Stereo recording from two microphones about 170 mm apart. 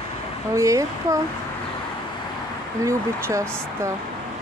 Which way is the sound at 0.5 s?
20° right (ahead or behind).